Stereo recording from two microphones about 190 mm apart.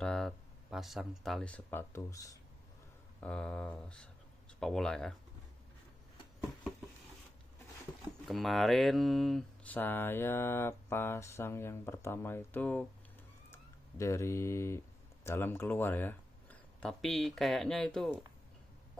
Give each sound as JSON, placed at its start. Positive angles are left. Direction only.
{"t": 0.0, "sound": "speech", "side_deg": 0}
{"t": 3.2, "sound": "speech", "side_deg": 5}
{"t": 8.3, "sound": "speech", "side_deg": 0}